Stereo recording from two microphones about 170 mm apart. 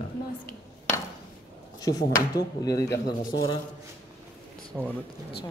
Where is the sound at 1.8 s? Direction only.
20° left (ahead or behind).